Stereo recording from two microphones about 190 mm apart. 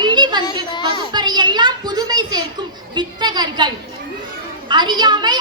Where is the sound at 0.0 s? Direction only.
25° right (ahead or behind).